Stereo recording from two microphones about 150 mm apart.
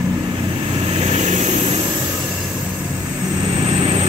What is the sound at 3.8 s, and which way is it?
Vehicle, 40° right (ahead or behind).